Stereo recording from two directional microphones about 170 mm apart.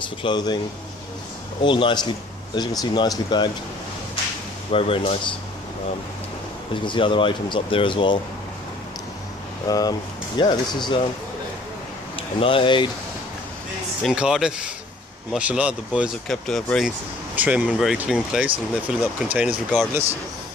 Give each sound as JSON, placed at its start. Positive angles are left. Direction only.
{"t": 0.0, "sound": "speech", "side_deg": 30}
{"t": 1.6, "sound": "speech", "side_deg": 30}
{"t": 4.7, "sound": "speech", "side_deg": 35}
{"t": 6.7, "sound": "speech", "side_deg": 30}
{"t": 9.7, "sound": "speech", "side_deg": 20}
{"t": 12.2, "sound": "speech", "side_deg": 30}
{"t": 14.0, "sound": "speech", "side_deg": -5}